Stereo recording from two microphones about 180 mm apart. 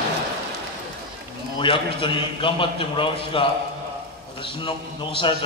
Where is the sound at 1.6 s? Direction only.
30° left (ahead or behind).